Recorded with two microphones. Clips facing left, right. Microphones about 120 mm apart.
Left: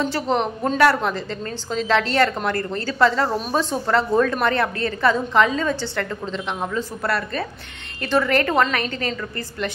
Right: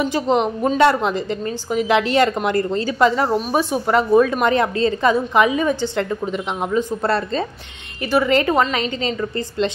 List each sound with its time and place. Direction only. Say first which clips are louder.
0.0 s a woman's voice: right 3 dB; 15° right (ahead or behind)
8.0 s a woman's voice: right 3 dB; 10° right (ahead or behind)